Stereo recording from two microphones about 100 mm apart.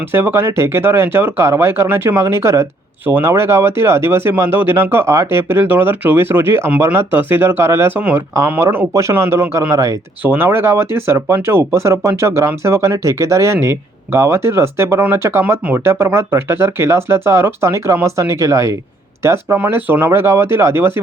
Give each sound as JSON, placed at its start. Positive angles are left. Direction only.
{"t": 0.0, "sound": "speech", "side_deg": -20}
{"t": 10.2, "sound": "speech", "side_deg": -20}